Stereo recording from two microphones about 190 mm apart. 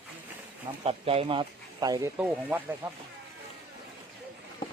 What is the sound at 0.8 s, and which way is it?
Speech, 30° right (ahead or behind).